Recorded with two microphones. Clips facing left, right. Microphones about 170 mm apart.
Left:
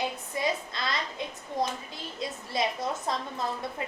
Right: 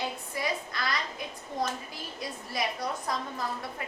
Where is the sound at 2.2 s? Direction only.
25° left (ahead or behind).